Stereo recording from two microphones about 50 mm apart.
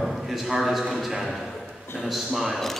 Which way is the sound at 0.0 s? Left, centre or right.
Centre.